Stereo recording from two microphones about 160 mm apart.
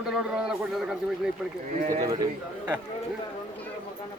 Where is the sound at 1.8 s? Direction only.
55° right (ahead or behind).